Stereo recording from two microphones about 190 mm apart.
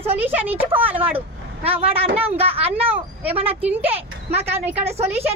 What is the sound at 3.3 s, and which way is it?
Speech, 30° right (ahead or behind).